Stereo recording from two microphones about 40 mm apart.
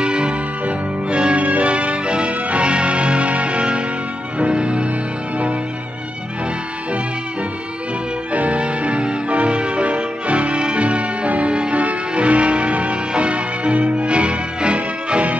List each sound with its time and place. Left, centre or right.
0.0 s music: right
8.3 s music: right